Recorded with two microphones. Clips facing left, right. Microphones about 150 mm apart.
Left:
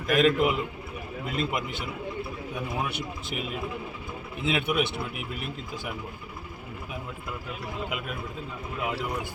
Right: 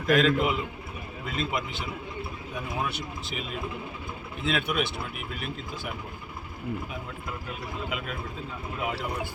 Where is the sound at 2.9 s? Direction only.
55° left (ahead or behind).